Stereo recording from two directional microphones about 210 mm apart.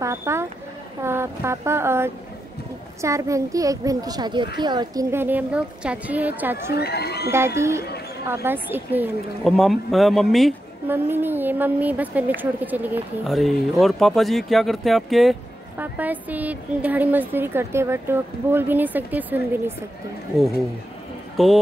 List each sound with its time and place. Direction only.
0.0 s a woman's voice: 15° right (ahead or behind)
6.7 s speech: 50° left (ahead or behind)
7.2 s a woman's voice: 10° right (ahead or behind)
21.4 s speech: centre (ahead or behind)